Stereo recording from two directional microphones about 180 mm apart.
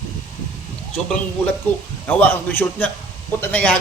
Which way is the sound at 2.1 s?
10° left (ahead or behind).